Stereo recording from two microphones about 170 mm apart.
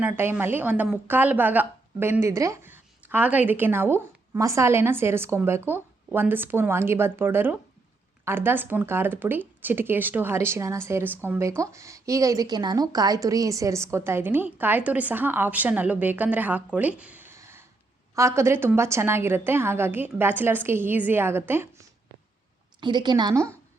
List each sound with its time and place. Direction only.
0.0 s a woman's voice: 15° right (ahead or behind)
22.8 s a woman's voice: 25° right (ahead or behind)